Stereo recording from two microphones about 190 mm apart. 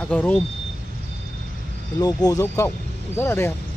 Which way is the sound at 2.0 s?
20° left (ahead or behind).